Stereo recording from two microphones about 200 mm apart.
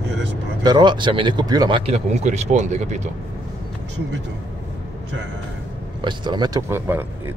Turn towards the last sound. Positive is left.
turn(degrees=-10)  # may be behind; listen again after turning